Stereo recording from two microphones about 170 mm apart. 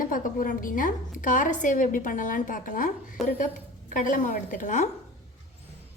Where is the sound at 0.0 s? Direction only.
55° left (ahead or behind).